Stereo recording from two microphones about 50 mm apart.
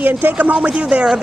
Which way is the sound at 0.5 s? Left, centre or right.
Right.